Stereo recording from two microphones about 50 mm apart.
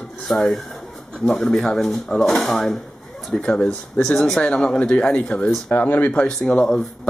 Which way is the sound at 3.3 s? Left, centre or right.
Centre.